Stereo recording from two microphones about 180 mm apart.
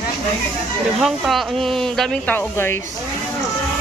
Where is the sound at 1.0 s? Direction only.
Centre (ahead or behind).